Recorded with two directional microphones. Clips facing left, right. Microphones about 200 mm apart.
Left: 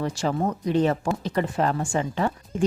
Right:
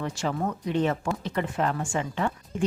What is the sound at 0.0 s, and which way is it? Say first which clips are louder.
Speech: left 4 dB; 35° left (ahead or behind).